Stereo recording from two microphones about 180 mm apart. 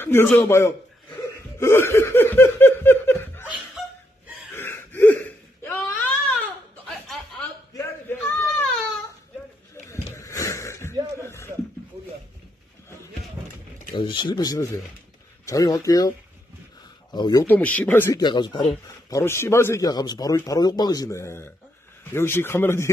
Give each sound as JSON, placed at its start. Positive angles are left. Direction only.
{"t": 0.0, "sound": "speech", "side_deg": 10}
{"t": 1.6, "sound": "laughter", "side_deg": 15}
{"t": 4.6, "sound": "a sound", "side_deg": 10}
{"t": 7.7, "sound": "a sound", "side_deg": 15}
{"t": 9.8, "sound": "a sound", "side_deg": 15}
{"t": 13.9, "sound": "speech", "side_deg": 25}
{"t": 17.1, "sound": "speech", "side_deg": 20}
{"t": 17.5, "sound": "speech", "side_deg": 10}
{"t": 18.2, "sound": "speech", "side_deg": 25}